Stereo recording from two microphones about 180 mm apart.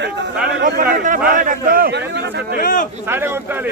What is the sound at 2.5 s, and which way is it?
Speech, 50° left (ahead or behind).